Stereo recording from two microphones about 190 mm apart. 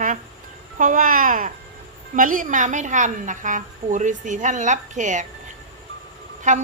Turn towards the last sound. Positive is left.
turn(degrees=-40)  # may be behind; listen again after turning